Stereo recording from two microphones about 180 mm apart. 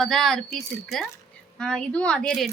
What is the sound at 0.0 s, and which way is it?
A woman's voice, centre (ahead or behind).